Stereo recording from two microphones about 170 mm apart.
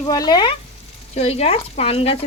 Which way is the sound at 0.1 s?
25° left (ahead or behind).